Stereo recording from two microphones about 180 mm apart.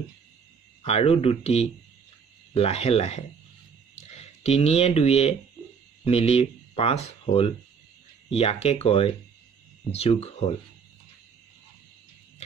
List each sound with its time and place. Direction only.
0.8 s speech: 35° left (ahead or behind)